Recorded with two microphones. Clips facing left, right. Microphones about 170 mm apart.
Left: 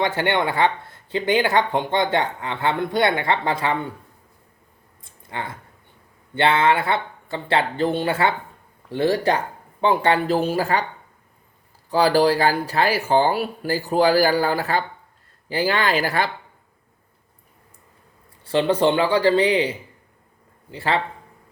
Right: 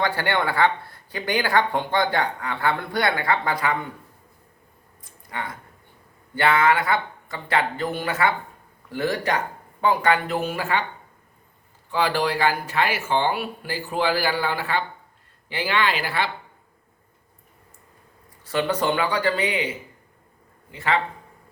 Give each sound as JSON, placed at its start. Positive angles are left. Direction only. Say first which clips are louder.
{"t": 0.0, "sound": "speech", "louder": "left 2 dB", "side_deg": 20}
{"t": 5.0, "sound": "a sound", "louder": "left 1 dB", "side_deg": 25}
{"t": 6.3, "sound": "speech", "louder": "left 1 dB", "side_deg": 25}
{"t": 11.9, "sound": "speech", "louder": "left 6 dB", "side_deg": 35}
{"t": 18.4, "sound": "speech", "louder": "left 5 dB", "side_deg": 30}